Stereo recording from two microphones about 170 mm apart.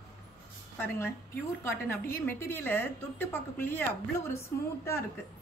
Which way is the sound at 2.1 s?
15° left (ahead or behind).